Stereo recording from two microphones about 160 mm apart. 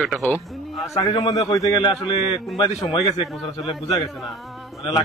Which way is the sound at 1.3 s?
25° left (ahead or behind).